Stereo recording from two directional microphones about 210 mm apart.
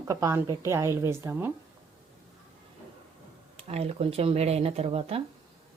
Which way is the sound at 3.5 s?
30° right (ahead or behind).